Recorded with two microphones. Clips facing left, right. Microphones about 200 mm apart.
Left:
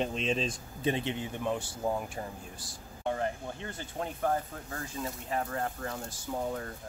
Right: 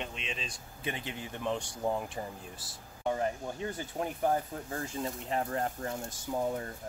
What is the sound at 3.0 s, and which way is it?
Speech, 15° right (ahead or behind).